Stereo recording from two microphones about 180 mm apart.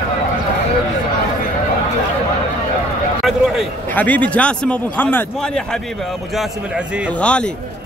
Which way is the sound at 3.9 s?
10° left (ahead or behind).